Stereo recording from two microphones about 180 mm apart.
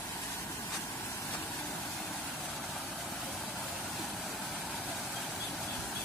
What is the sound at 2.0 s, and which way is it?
Vehicle, centre (ahead or behind).